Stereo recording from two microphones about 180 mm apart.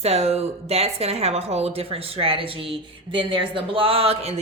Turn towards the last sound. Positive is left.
turn(degrees=-35)  # may be behind; listen again after turning